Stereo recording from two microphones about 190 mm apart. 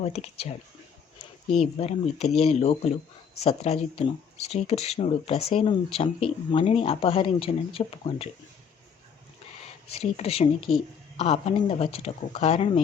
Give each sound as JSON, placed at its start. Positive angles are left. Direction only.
{"t": 0.0, "sound": "speech", "side_deg": 30}
{"t": 1.8, "sound": "speech", "side_deg": 35}
{"t": 9.9, "sound": "speech", "side_deg": 30}